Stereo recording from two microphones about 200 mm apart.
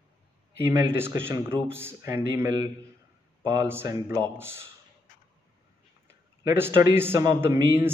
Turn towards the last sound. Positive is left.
turn(degrees=-10)  # may be behind; listen again after turning